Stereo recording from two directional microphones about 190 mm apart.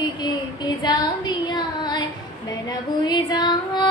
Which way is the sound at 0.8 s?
20° left (ahead or behind).